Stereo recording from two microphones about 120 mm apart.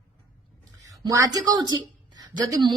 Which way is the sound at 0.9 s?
30° right (ahead or behind).